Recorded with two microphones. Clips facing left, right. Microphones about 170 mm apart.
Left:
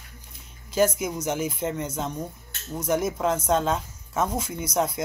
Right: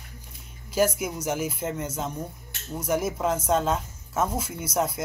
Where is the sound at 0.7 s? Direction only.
5° right (ahead or behind).